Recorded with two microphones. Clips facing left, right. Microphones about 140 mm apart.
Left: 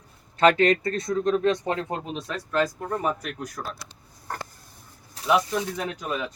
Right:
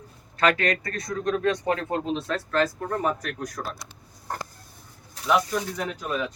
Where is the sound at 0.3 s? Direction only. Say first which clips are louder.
Left 4 dB; 25° left (ahead or behind).